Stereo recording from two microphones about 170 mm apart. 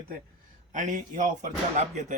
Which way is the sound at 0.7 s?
50° right (ahead or behind).